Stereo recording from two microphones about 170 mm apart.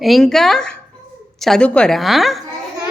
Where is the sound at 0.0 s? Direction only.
Centre (ahead or behind).